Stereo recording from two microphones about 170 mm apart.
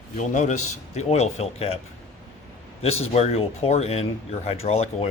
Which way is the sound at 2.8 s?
35° left (ahead or behind).